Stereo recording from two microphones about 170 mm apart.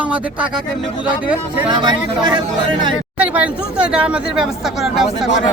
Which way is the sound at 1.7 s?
25° right (ahead or behind).